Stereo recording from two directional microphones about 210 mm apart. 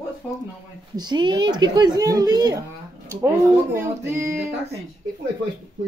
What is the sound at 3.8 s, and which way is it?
Speech, 15° right (ahead or behind).